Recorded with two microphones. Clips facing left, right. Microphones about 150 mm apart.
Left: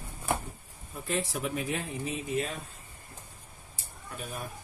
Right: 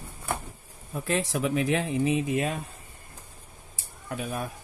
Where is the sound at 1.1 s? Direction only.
90° right.